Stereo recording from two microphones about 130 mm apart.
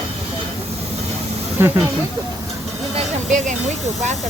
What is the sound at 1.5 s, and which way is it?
Speech, 20° right (ahead or behind).